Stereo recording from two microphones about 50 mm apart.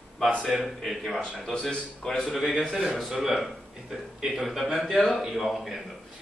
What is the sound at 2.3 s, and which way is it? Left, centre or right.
A man's voice, centre.